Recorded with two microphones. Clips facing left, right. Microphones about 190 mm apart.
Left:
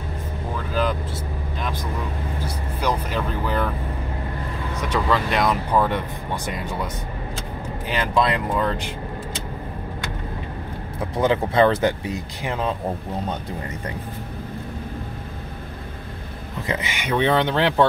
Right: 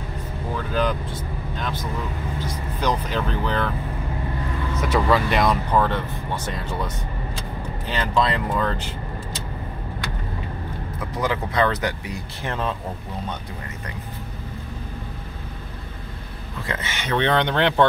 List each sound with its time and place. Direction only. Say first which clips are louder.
0.7 s speech: even; 5° left (ahead or behind)
4.8 s speech: right 2 dB; 5° right (ahead or behind); by 6.9 s 10° left (ahead or behind)
7.9 s speech: left 1 dB; 10° left (ahead or behind)
11.0 s speech: left 5 dB; 25° left (ahead or behind)
12.4 s speech: left 2 dB; 10° left (ahead or behind)
16.6 s speech: left 2 dB; 15° left (ahead or behind)